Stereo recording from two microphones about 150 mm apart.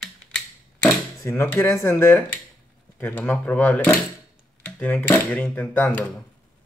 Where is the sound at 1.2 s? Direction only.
15° left (ahead or behind).